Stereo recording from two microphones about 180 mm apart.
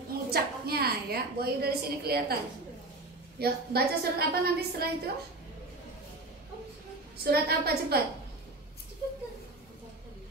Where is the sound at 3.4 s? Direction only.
60° right (ahead or behind).